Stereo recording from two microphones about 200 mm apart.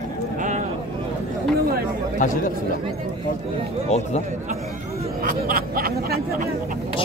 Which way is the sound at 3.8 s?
35° left (ahead or behind).